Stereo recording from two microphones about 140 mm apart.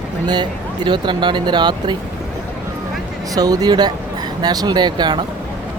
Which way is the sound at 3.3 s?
25° right (ahead or behind).